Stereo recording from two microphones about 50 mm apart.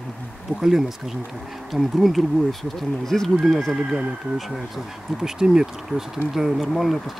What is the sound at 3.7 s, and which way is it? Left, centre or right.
Speech, centre.